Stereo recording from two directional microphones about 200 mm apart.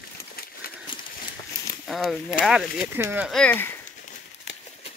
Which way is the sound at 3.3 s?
5° left (ahead or behind).